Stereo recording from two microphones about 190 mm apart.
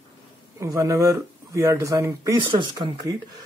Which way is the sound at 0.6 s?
15° right (ahead or behind).